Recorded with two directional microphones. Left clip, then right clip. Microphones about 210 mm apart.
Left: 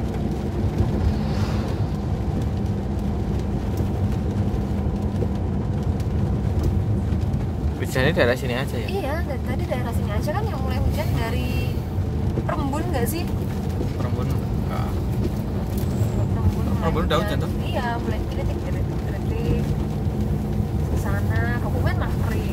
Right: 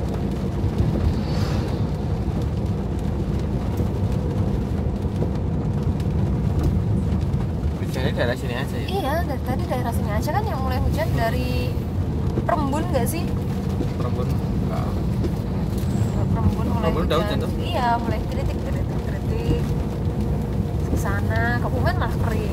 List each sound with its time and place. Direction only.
8.0 s speech: 40° left (ahead or behind)
12.4 s speech: 10° right (ahead or behind)